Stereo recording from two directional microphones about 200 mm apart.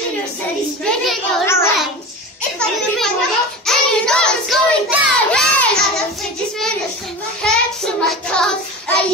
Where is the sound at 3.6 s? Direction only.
5° left (ahead or behind).